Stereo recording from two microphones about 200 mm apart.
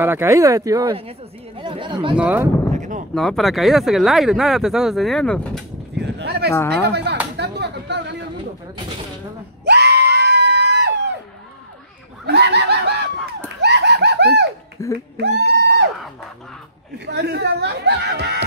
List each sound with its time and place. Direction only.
0.0 s speech: 10° right (ahead or behind)
2.1 s speech: 5° right (ahead or behind)
2.7 s artillery fire: 40° right (ahead or behind)
3.2 s speech: centre (ahead or behind)
5.9 s speech: 55° right (ahead or behind)
6.7 s snicker: 55° right (ahead or behind)
7.3 s a sound: 55° right (ahead or behind)
9.7 s screaming: 55° right (ahead or behind)
12.3 s snicker: 55° right (ahead or behind)
13.6 s laughter: 55° right (ahead or behind)
14.8 s speech: 15° left (ahead or behind)
15.1 s a sound: 60° right (ahead or behind)
17.0 s a sound: 55° right (ahead or behind)